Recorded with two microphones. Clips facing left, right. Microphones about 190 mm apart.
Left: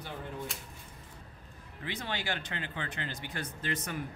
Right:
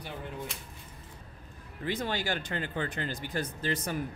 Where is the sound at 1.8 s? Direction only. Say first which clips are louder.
Right 5 dB; 40° right (ahead or behind).